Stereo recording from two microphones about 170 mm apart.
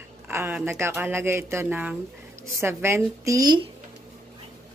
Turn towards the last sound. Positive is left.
turn(degrees=-20)  # may be behind; listen again after turning